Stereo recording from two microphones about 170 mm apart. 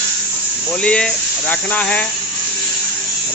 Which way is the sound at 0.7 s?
5° left (ahead or behind).